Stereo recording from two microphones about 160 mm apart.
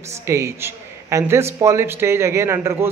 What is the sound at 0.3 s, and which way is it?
A man's voice, 15° right (ahead or behind).